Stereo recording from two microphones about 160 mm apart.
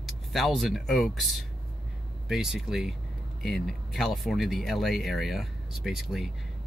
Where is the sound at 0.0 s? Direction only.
Centre (ahead or behind).